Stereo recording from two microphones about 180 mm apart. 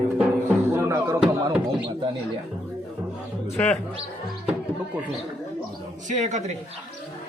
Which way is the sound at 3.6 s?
10° left (ahead or behind).